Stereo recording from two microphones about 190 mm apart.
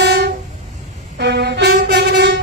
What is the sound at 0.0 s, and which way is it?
Train, 60° right (ahead or behind).